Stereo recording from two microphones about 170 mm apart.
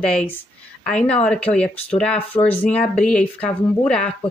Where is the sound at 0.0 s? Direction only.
5° left (ahead or behind).